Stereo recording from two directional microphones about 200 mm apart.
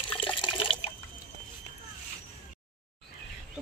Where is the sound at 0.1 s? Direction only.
25° left (ahead or behind).